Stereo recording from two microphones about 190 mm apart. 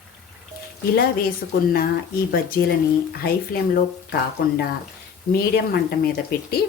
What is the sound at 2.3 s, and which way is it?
Speech, 55° left (ahead or behind).